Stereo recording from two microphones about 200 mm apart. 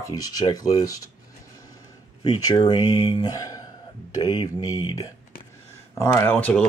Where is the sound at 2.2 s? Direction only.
20° left (ahead or behind).